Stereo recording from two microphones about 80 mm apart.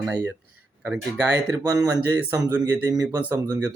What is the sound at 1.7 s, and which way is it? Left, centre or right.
Speech, right.